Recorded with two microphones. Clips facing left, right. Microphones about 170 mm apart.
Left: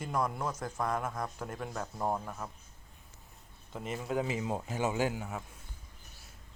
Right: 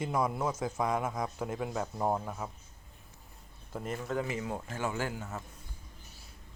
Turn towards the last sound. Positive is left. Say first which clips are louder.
# left 3 dB
turn(degrees=10)  # may be behind; listen again after turning